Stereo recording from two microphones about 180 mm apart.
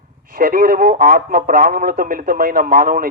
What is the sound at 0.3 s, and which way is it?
A man's voice, 55° right (ahead or behind).